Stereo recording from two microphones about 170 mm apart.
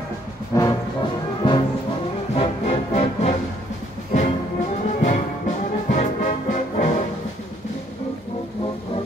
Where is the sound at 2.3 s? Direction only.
35° left (ahead or behind).